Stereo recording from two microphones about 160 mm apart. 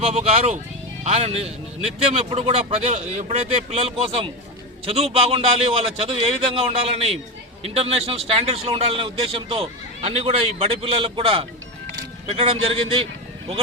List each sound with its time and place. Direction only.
0.0 s a man's voice: 40° right (ahead or behind)